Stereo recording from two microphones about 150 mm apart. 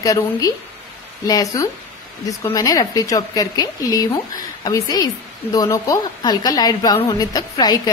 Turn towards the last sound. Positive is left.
turn(degrees=25)  # may be behind; listen again after turning